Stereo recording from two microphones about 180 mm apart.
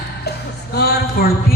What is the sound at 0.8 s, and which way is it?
Speech, 60° left (ahead or behind).